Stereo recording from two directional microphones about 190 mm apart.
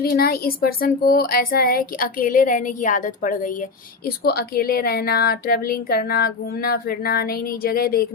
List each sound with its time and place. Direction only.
0.0 s speech: 55° left (ahead or behind)